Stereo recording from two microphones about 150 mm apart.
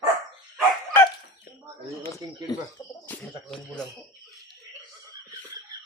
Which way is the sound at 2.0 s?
20° left (ahead or behind).